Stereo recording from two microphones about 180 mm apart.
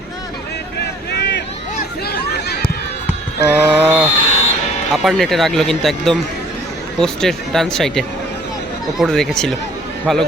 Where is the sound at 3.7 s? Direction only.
10° right (ahead or behind).